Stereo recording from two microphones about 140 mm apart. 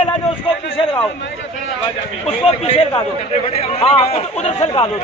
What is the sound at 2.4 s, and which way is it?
Speech, 45° left (ahead or behind).